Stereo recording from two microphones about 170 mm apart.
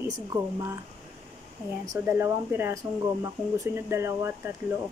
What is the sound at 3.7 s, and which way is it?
Speech, 15° right (ahead or behind).